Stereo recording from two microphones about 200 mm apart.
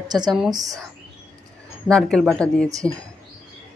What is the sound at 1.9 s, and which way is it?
Speech, 5° left (ahead or behind).